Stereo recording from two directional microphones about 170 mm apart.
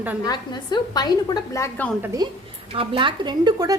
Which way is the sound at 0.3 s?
25° left (ahead or behind).